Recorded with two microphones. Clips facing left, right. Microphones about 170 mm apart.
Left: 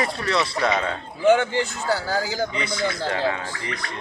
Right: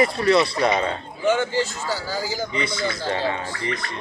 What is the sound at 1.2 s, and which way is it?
Speech, 55° left (ahead or behind).